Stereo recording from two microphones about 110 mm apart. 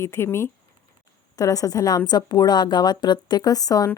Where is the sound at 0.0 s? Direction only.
25° left (ahead or behind).